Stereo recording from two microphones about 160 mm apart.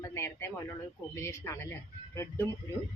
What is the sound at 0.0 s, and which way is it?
A woman's voice, 15° left (ahead or behind).